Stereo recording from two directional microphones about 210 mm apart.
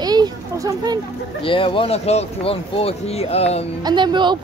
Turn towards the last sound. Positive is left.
turn(degrees=-20)  # may be behind; listen again after turning